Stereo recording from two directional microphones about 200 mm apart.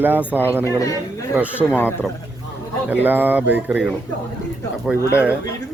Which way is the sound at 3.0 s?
10° right (ahead or behind).